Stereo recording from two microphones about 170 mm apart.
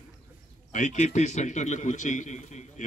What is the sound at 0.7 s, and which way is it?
A man's voice, 45° left (ahead or behind).